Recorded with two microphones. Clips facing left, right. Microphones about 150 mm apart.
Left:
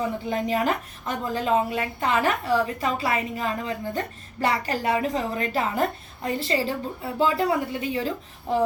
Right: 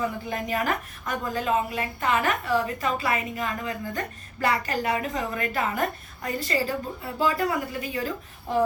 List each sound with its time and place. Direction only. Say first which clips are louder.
0.3 s a woman's voice: left 6 dB; 25° left (ahead or behind)